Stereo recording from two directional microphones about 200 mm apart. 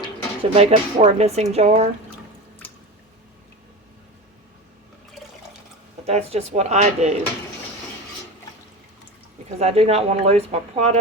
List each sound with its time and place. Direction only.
0.5 s speech: 30° right (ahead or behind)
6.1 s speech: 30° right (ahead or behind)
9.6 s speech: 30° right (ahead or behind)